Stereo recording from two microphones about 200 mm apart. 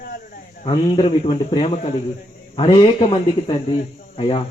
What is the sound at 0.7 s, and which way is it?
A man's voice, 25° left (ahead or behind).